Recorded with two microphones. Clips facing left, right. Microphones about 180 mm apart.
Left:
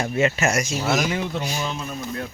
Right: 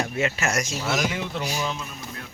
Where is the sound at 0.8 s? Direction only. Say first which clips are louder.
Left 3 dB; 50° left (ahead or behind).